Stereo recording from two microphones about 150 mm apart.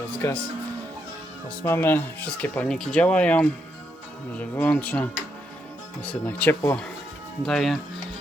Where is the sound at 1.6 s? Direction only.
15° left (ahead or behind).